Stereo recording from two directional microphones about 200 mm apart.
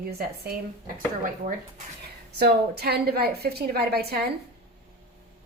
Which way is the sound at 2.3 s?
50° right (ahead or behind).